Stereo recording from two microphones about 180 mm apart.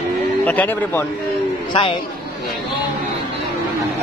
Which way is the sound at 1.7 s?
30° left (ahead or behind).